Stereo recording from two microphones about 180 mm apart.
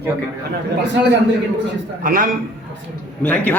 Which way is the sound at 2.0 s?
50° right (ahead or behind).